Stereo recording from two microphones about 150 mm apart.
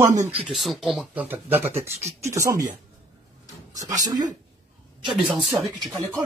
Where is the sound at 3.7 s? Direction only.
25° right (ahead or behind).